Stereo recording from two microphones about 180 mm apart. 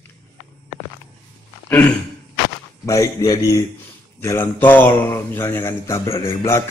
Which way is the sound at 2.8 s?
20° left (ahead or behind).